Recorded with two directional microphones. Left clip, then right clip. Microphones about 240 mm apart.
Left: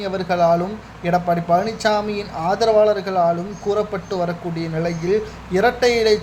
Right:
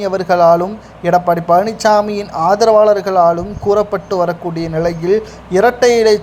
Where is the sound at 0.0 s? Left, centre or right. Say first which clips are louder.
Right 7 dB; centre.